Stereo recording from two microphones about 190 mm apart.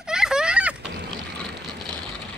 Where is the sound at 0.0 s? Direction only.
5° right (ahead or behind).